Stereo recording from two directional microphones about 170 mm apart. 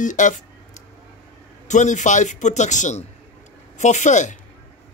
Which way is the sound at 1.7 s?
45° left (ahead or behind).